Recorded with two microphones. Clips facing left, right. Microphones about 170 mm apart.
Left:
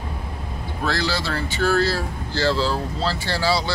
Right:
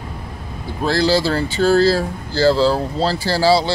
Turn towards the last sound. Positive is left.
turn(degrees=-30)  # may be behind; listen again after turning